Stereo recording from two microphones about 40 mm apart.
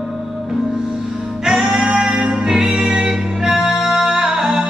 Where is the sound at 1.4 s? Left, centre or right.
Centre.